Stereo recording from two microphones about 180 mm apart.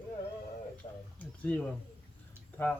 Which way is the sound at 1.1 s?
10° left (ahead or behind).